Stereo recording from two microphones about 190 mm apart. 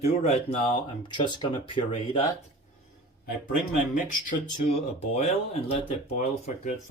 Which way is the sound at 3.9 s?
40° left (ahead or behind).